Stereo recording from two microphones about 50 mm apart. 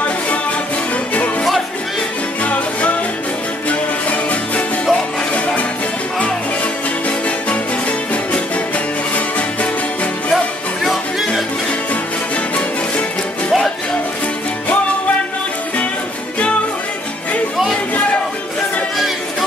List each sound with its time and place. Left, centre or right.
2.4 s music: left
7.1 s music: left
10.3 s music: centre